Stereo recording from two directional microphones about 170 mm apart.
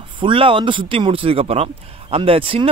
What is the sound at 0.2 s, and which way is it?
Speech, 30° right (ahead or behind).